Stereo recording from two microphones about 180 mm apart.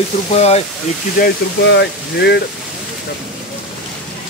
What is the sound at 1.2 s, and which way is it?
Speech, 65° left (ahead or behind).